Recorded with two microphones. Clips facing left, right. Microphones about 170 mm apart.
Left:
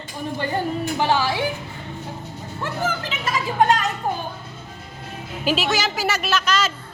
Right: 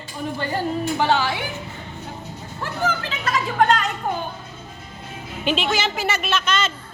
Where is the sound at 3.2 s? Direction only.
20° left (ahead or behind).